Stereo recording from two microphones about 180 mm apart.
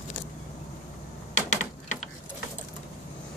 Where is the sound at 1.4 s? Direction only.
40° left (ahead or behind).